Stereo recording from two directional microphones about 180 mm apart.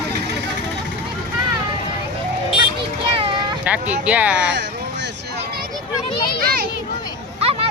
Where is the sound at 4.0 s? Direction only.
10° right (ahead or behind).